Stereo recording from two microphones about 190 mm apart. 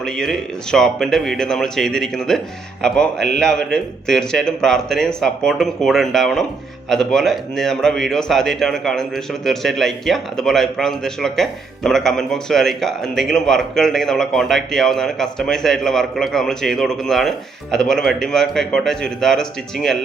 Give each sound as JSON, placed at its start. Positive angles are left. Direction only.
{"t": 0.0, "sound": "speech", "side_deg": 5}